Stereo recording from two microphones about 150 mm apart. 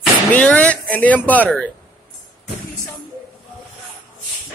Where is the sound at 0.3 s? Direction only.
10° left (ahead or behind).